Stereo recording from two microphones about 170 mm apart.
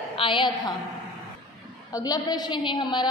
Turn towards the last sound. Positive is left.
turn(degrees=25)  # may be behind; listen again after turning